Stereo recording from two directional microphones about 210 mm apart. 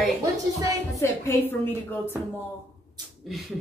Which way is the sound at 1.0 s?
10° left (ahead or behind).